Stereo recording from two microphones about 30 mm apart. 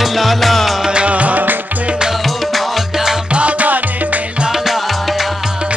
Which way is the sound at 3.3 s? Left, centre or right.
Right.